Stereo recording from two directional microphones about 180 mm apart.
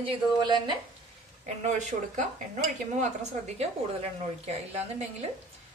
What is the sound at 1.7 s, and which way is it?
A woman's voice, 40° right (ahead or behind).